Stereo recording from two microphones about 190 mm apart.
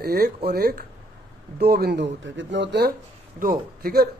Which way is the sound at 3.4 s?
50° right (ahead or behind).